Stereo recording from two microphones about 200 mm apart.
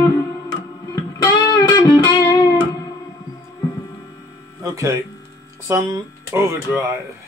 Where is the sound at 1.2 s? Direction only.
20° left (ahead or behind).